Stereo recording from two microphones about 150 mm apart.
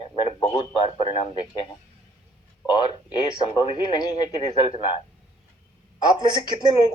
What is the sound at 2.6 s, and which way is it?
Speech, 30° left (ahead or behind).